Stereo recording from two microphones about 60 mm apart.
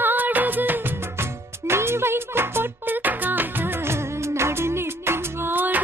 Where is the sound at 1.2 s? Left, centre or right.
Right.